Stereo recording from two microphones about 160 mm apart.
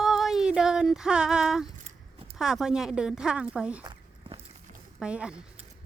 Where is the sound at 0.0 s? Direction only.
Centre (ahead or behind).